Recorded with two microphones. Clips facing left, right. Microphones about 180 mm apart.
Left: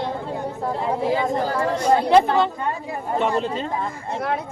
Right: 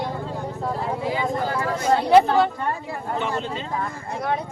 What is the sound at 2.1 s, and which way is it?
Speech, 5° right (ahead or behind).